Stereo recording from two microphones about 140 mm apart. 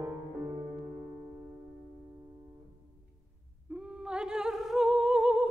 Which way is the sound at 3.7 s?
5° right (ahead or behind).